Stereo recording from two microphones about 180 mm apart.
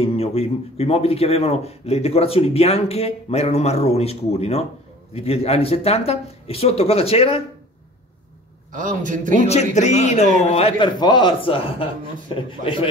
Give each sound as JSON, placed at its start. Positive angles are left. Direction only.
{"t": 0.0, "sound": "a man's voice", "side_deg": 35}
{"t": 8.7, "sound": "a man's voice", "side_deg": -45}
{"t": 9.5, "sound": "a man's voice", "side_deg": 40}